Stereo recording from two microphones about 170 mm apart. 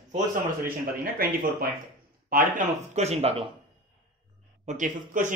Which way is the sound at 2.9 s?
40° right (ahead or behind).